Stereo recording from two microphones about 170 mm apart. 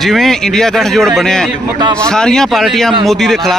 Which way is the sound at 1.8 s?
25° right (ahead or behind).